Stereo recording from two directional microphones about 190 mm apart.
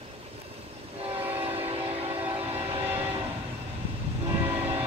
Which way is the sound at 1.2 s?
10° right (ahead or behind).